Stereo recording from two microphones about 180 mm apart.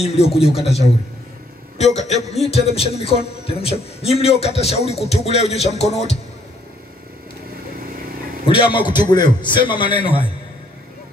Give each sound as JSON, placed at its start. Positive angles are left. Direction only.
{"t": 0.0, "sound": "a man's voice", "side_deg": 35}
{"t": 1.8, "sound": "a man's voice", "side_deg": 40}
{"t": 8.7, "sound": "a man's voice", "side_deg": 25}